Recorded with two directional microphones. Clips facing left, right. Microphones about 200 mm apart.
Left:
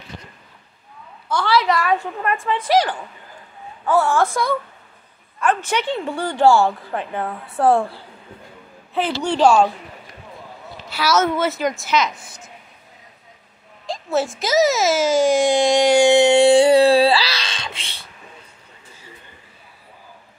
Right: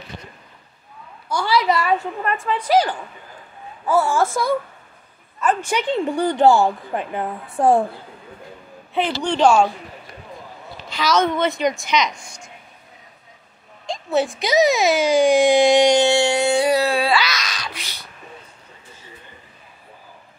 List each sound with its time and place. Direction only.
1.3 s a woman's voice: 10° right (ahead or behind)
3.8 s a woman's voice: 5° right (ahead or behind)
8.9 s speech: 5° left (ahead or behind)
10.9 s speech: 10° left (ahead or behind)
13.8 s speech: centre (ahead or behind)
16.0 s a sound: 20° left (ahead or behind)
16.3 s music: 30° left (ahead or behind)